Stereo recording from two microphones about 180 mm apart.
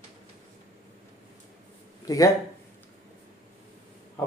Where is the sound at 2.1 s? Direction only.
20° left (ahead or behind).